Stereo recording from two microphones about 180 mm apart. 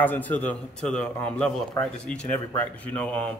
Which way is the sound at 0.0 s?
10° left (ahead or behind).